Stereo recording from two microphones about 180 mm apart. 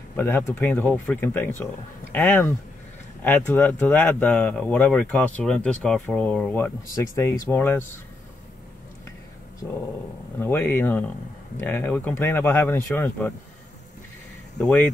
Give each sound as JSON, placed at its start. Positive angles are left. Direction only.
{"t": 0.1, "sound": "speech", "side_deg": 10}
{"t": 10.4, "sound": "speech", "side_deg": 10}
{"t": 14.6, "sound": "speech", "side_deg": 5}